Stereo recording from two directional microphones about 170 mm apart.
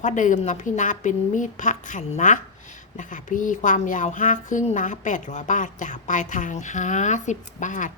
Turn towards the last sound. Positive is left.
turn(degrees=45)  # may be behind; listen again after turning